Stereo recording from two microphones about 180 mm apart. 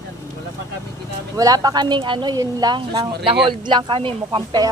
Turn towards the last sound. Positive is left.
turn(degrees=-25)  # may be behind; listen again after turning